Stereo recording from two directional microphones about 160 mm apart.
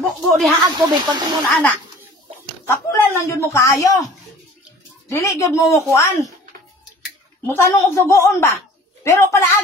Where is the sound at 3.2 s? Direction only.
20° left (ahead or behind).